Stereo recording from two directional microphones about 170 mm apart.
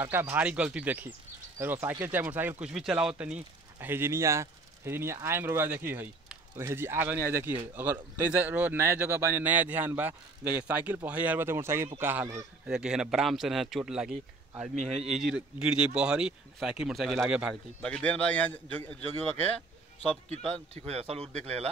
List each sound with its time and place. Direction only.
0.0 s speech: 15° right (ahead or behind)
14.8 s a man's voice: 40° right (ahead or behind)
15.1 s speech: 5° right (ahead or behind)
17.8 s a man's voice: 5° left (ahead or behind)
20.2 s a man's voice: 40° right (ahead or behind)